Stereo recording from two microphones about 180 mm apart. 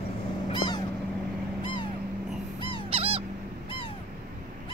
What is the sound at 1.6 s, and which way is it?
Vehicle, 25° left (ahead or behind).